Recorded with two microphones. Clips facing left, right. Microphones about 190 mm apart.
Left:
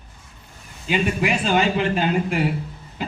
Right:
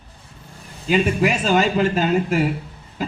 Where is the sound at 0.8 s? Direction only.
40° right (ahead or behind).